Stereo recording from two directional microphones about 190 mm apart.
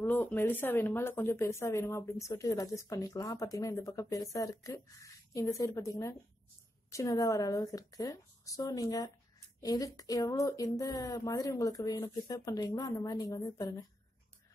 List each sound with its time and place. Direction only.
0.0 s speech: 10° left (ahead or behind)